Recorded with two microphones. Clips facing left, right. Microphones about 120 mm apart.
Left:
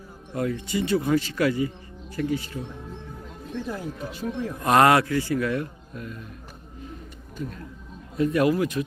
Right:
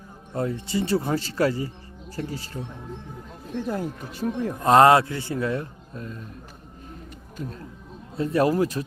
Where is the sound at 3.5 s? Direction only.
45° right (ahead or behind).